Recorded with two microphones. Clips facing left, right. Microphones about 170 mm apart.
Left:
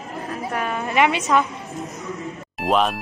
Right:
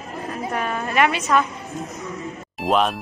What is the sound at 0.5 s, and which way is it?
Speech, 5° left (ahead or behind).